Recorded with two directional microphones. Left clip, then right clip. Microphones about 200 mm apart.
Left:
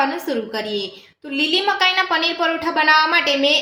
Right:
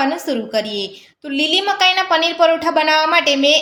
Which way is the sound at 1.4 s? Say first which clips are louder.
Right 2 dB; 50° right (ahead or behind).